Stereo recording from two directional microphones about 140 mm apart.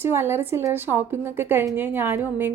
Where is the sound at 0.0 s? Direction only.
15° right (ahead or behind).